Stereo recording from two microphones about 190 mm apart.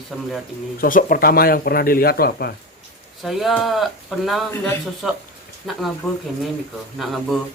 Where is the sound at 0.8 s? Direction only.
45° left (ahead or behind).